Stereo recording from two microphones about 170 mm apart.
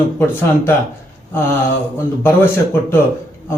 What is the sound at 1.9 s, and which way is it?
Speech, 15° left (ahead or behind).